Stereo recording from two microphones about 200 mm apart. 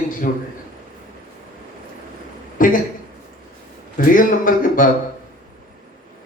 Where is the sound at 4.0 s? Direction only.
45° left (ahead or behind).